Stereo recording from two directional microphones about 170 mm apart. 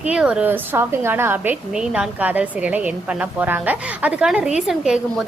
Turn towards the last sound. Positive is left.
turn(degrees=-5)  # may be behind; listen again after turning